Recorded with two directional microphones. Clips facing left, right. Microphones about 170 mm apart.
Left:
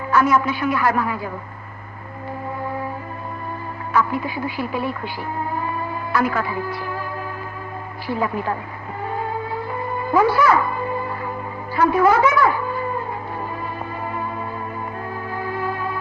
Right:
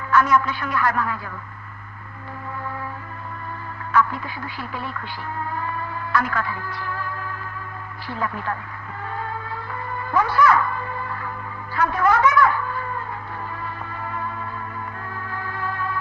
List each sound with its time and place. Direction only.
0.1 s a man's voice: 10° left (ahead or behind)
3.9 s a man's voice: 10° left (ahead or behind)
5.5 s music: 15° left (ahead or behind)
8.0 s a man's voice: 10° left (ahead or behind)
9.0 s music: 15° left (ahead or behind)
11.7 s speech: 10° left (ahead or behind)
14.0 s music: 15° left (ahead or behind)
15.3 s music: 15° left (ahead or behind)